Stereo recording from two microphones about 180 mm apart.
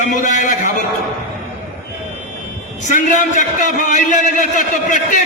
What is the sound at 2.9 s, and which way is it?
A man's voice, 45° left (ahead or behind).